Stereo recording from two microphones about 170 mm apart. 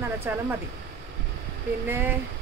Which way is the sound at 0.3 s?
10° right (ahead or behind).